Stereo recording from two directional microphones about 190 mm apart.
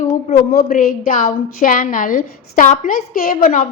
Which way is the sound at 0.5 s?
50° left (ahead or behind).